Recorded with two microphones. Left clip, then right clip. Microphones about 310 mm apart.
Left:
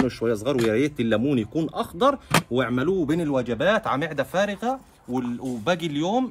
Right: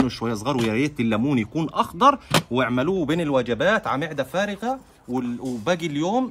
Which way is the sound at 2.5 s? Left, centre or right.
Right.